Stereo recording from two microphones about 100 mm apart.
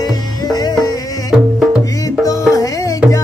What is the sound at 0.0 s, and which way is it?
Music, 40° left (ahead or behind).